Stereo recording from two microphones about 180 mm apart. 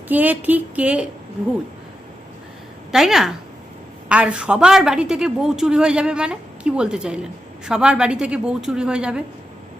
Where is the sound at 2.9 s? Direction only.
Centre (ahead or behind).